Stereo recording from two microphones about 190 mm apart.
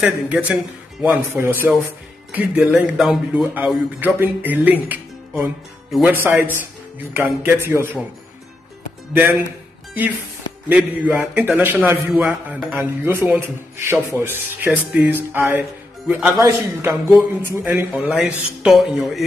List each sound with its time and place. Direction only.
0.0 s a man's voice: 5° right (ahead or behind)
9.1 s speech: 10° right (ahead or behind)
10.7 s a man's voice: 10° right (ahead or behind)